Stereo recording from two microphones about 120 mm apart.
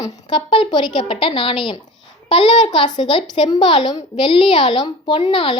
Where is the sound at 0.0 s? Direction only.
40° left (ahead or behind).